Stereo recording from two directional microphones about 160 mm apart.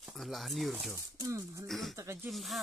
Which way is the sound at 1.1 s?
20° right (ahead or behind).